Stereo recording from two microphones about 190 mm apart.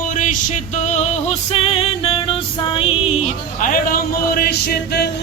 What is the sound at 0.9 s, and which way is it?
Music, 35° left (ahead or behind).